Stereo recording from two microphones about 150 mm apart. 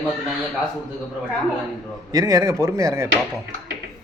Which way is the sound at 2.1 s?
25° right (ahead or behind).